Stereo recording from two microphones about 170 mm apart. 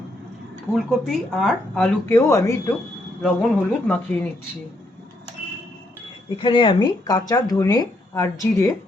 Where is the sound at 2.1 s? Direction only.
15° left (ahead or behind).